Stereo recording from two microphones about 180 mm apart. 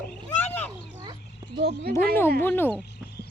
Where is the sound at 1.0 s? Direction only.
20° right (ahead or behind).